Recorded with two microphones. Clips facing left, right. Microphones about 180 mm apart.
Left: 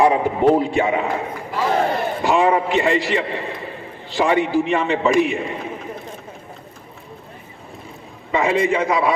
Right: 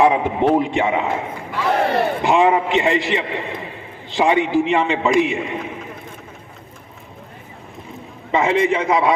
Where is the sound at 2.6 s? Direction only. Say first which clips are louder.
Even; 20° right (ahead or behind).